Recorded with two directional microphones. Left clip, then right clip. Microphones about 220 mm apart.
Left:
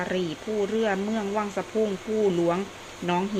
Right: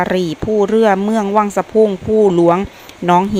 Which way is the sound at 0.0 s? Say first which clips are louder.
Right 12 dB; 25° right (ahead or behind).